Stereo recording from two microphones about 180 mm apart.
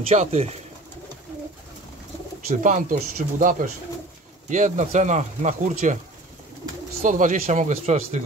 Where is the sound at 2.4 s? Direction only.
45° right (ahead or behind).